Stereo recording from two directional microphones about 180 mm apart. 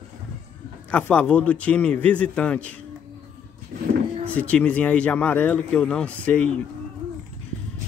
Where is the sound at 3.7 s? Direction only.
55° right (ahead or behind).